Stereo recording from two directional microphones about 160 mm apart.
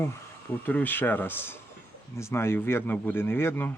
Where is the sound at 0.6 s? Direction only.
10° left (ahead or behind).